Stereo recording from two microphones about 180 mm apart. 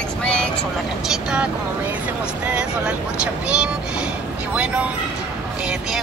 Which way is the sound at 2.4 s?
5° right (ahead or behind).